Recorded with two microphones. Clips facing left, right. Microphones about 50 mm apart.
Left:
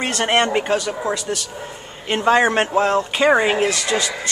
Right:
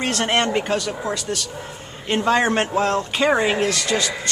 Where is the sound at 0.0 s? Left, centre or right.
Centre.